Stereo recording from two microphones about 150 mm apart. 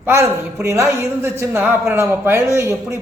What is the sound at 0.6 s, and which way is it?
Speech, 20° right (ahead or behind).